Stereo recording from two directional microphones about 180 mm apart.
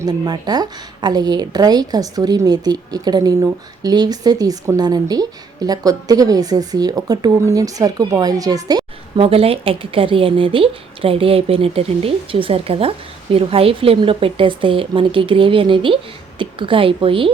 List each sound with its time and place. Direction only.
0.0 s a woman's voice: 20° right (ahead or behind)